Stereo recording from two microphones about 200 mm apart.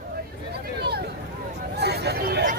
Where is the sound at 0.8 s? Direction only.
55° right (ahead or behind).